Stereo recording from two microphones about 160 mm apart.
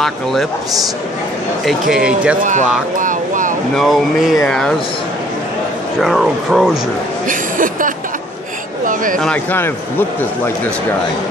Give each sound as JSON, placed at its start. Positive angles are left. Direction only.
{"t": 0.0, "sound": "speech", "side_deg": 0}
{"t": 1.6, "sound": "speech", "side_deg": 0}
{"t": 2.4, "sound": "speech", "side_deg": -50}
{"t": 3.0, "sound": "vehicle", "side_deg": -55}
{"t": 3.7, "sound": "speech", "side_deg": 0}
{"t": 5.9, "sound": "speech", "side_deg": 0}
{"t": 7.2, "sound": "speech", "side_deg": -55}
{"t": 8.8, "sound": "a sound", "side_deg": -55}
{"t": 9.2, "sound": "a man's voice", "side_deg": 10}